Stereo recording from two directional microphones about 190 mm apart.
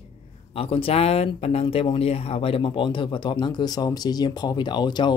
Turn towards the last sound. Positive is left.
turn(degrees=25)  # may be behind; listen again after turning